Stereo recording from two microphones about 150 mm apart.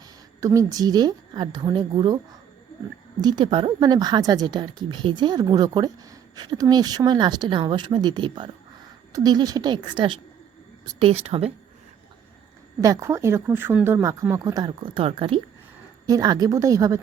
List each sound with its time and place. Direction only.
0.3 s a woman's voice: 20° right (ahead or behind)
3.2 s a woman's voice: 30° right (ahead or behind)
11.0 s speech: 45° right (ahead or behind)
12.8 s a woman's voice: 20° right (ahead or behind); by 15.4 s 40° right (ahead or behind)
16.0 s a woman's voice: 25° right (ahead or behind)